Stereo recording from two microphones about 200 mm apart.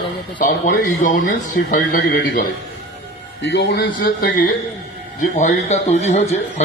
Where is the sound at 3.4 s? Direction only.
60° left (ahead or behind).